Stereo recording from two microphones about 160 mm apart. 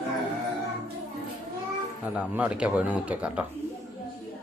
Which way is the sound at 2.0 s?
10° right (ahead or behind).